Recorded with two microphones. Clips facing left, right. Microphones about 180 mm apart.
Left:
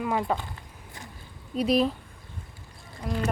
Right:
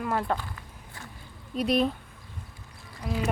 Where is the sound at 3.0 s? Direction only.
5° right (ahead or behind).